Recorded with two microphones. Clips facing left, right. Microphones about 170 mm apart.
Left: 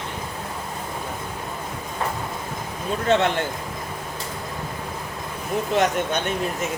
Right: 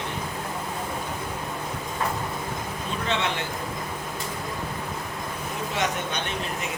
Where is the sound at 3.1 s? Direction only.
50° left (ahead or behind).